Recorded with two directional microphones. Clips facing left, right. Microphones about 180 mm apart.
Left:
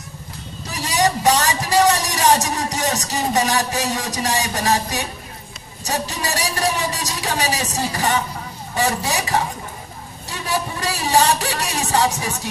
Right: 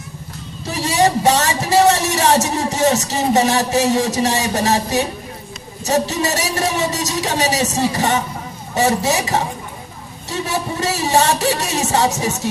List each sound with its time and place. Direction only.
0.7 s a man's voice: 25° right (ahead or behind)